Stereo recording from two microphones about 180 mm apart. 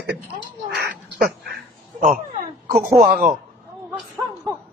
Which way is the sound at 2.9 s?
55° right (ahead or behind).